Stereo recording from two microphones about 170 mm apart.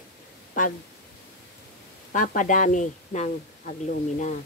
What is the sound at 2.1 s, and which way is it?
Speech, 50° left (ahead or behind).